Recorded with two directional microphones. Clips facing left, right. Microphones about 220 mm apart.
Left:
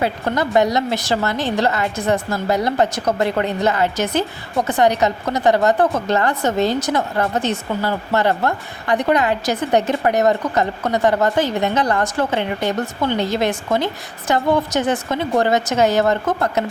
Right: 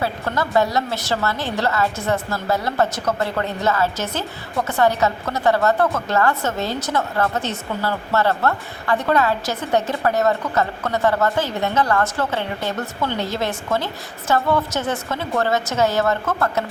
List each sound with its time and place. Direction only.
0.0 s a woman's voice: 20° left (ahead or behind)